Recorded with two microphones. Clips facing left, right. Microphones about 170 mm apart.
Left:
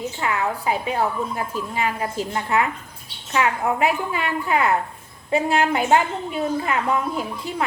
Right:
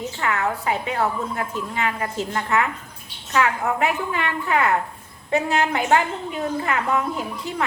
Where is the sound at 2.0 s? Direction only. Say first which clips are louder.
Even; 25° left (ahead or behind).